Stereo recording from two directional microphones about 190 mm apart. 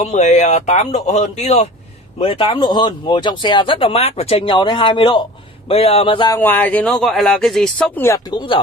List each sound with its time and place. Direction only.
0.0 s speech: 40° left (ahead or behind)
6.3 s speech: 10° left (ahead or behind)
8.3 s speech: 25° left (ahead or behind)